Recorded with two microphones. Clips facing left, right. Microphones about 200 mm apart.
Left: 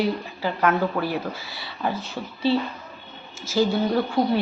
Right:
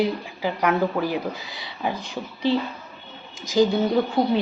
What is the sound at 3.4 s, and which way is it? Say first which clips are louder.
Speech: right 3 dB; 15° right (ahead or behind).